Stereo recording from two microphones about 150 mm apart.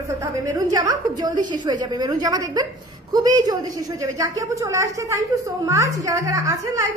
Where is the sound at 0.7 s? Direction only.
25° right (ahead or behind).